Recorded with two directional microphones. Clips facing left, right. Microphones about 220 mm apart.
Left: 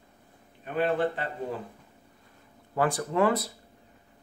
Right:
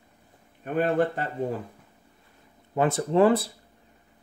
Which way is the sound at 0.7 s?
45° right (ahead or behind).